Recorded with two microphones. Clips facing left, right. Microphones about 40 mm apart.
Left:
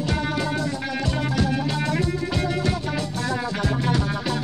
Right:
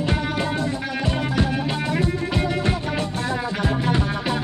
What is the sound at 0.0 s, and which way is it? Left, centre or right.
Music, right.